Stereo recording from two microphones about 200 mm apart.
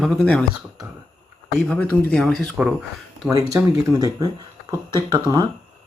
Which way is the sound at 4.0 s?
20° right (ahead or behind).